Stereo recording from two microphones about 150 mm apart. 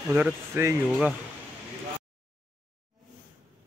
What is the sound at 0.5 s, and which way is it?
Speech, 15° right (ahead or behind).